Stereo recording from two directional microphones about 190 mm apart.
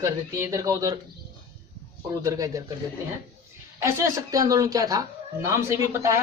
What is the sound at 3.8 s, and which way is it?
A woman's voice, 15° right (ahead or behind).